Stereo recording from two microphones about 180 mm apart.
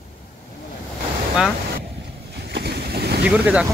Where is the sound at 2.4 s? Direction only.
65° right (ahead or behind).